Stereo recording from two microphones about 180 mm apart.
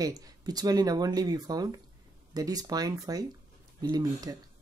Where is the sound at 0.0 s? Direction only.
20° right (ahead or behind).